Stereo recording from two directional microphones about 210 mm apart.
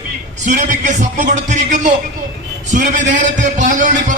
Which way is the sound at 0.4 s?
35° right (ahead or behind).